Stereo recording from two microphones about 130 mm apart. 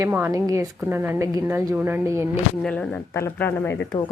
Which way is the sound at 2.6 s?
5° left (ahead or behind).